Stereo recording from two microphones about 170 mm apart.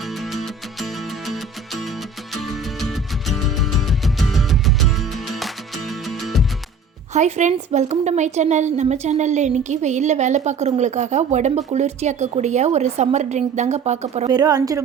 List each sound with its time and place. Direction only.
0.0 s music: centre (ahead or behind)
7.1 s a woman's voice: 45° right (ahead or behind)
14.3 s a woman's voice: 25° right (ahead or behind)